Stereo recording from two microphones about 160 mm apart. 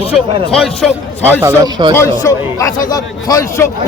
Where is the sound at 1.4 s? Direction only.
25° right (ahead or behind).